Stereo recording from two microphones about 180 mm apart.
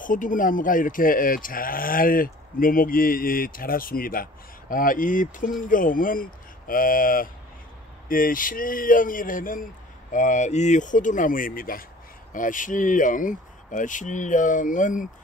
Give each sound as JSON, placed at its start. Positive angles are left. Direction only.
{"t": 0.0, "sound": "speech", "side_deg": 45}